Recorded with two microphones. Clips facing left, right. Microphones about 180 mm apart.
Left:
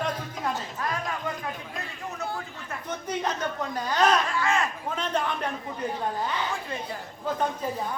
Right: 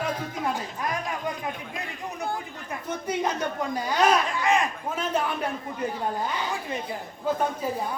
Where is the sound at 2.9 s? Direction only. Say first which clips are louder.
Right 2 dB; 10° right (ahead or behind).